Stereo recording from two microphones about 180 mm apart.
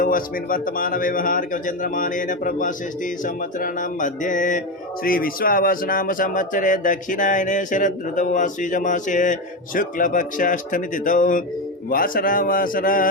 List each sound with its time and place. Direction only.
0.0 s speech: 50° left (ahead or behind)